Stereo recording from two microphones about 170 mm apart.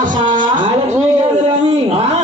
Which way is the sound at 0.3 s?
50° right (ahead or behind).